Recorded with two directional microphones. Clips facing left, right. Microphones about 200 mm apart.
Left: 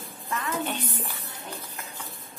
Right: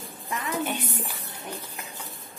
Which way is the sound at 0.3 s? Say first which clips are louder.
Right 1 dB; 15° right (ahead or behind).